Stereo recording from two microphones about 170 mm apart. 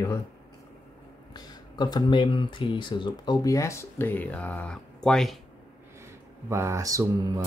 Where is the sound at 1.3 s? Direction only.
25° left (ahead or behind); by 5.4 s 5° left (ahead or behind).